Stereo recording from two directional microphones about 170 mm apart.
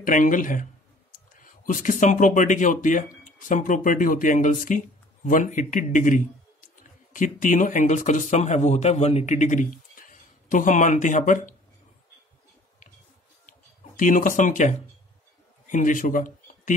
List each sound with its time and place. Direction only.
0.0 s speech: 50° left (ahead or behind)
13.5 s a sound: 50° left (ahead or behind)
15.6 s speech: 50° left (ahead or behind)